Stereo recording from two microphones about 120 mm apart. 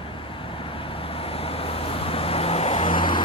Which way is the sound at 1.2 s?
50° left (ahead or behind).